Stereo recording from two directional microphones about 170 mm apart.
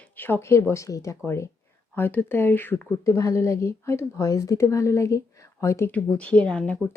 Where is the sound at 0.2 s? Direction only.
15° left (ahead or behind).